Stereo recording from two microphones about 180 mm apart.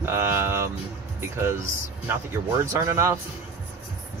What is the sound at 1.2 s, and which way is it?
Speech, 15° right (ahead or behind).